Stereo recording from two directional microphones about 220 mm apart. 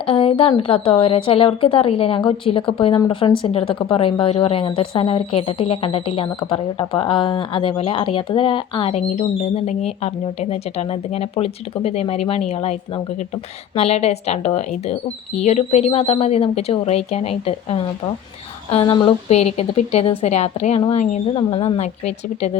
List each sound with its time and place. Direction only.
0.0 s a woman's voice: 25° left (ahead or behind)